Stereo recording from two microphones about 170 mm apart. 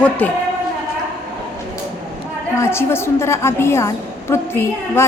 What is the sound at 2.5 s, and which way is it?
A woman's voice, 15° left (ahead or behind).